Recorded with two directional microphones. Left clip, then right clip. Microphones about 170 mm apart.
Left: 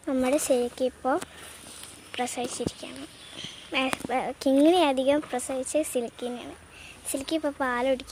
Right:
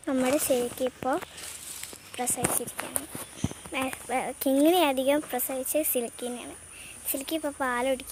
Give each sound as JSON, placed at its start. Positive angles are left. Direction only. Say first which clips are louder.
{"t": 0.0, "sound": "a woman's voice", "louder": "left 1 dB", "side_deg": 0}
{"t": 2.1, "sound": "a woman's voice", "louder": "even", "side_deg": 5}